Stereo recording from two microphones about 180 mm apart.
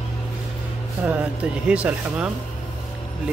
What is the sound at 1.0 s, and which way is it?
Speech, 10° right (ahead or behind).